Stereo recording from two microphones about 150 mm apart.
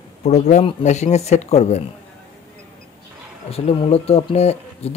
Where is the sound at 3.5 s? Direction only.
40° left (ahead or behind).